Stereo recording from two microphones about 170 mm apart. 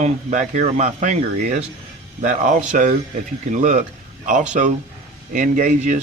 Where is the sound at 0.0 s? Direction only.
45° right (ahead or behind).